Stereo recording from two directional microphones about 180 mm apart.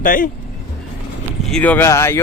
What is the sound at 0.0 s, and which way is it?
Speech, 50° left (ahead or behind).